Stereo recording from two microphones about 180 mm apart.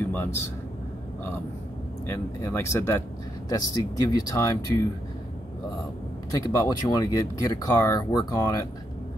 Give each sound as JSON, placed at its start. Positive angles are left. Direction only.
{"t": 0.0, "sound": "air conditioning", "side_deg": 10}
{"t": 2.0, "sound": "speech", "side_deg": 10}
{"t": 6.3, "sound": "speech", "side_deg": 20}